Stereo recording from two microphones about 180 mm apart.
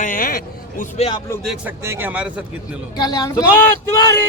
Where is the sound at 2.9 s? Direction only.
20° left (ahead or behind).